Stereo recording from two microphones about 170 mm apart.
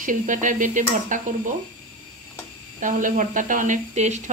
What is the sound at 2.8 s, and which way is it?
Speech, 50° right (ahead or behind).